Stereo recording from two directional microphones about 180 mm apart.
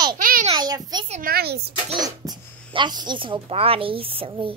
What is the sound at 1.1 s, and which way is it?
Speech, 55° right (ahead or behind).